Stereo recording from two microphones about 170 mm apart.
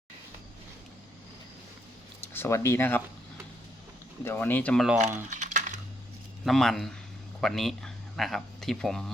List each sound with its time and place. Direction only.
2.3 s speech: 15° left (ahead or behind)
4.2 s speech: 15° left (ahead or behind)
4.9 s a sound: 45° right (ahead or behind)
6.4 s speech: centre (ahead or behind)